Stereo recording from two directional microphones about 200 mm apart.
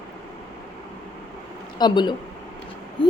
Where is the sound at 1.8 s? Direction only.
20° left (ahead or behind).